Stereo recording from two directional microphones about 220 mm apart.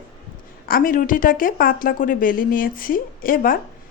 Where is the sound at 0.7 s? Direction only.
40° left (ahead or behind).